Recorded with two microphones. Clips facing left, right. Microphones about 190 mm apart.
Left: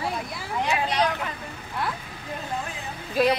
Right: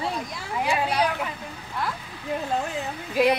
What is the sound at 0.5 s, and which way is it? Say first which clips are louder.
Speech: right 1 dB; 10° right (ahead or behind).